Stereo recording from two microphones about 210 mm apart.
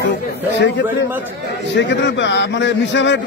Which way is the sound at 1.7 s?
55° left (ahead or behind).